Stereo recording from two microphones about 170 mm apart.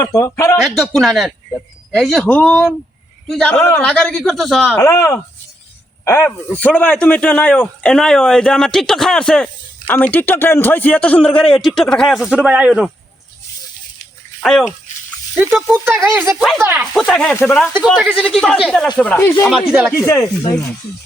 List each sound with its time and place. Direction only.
0.0 s speech: 15° left (ahead or behind)
0.8 s a man's voice: centre (ahead or behind)
4.8 s a man's voice: 20° left (ahead or behind); by 12.9 s 5° right (ahead or behind)
15.7 s speech: 15° right (ahead or behind)
16.4 s a man's voice: centre (ahead or behind)
18.0 s a man's voice: 5° right (ahead or behind); by 19.5 s 10° left (ahead or behind)
19.5 s a man's voice: 5° right (ahead or behind)
19.9 s speech: 15° left (ahead or behind)